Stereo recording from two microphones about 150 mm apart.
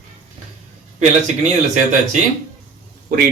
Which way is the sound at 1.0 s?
50° right (ahead or behind).